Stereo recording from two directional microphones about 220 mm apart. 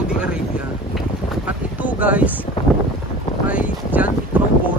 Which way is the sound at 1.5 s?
5° right (ahead or behind).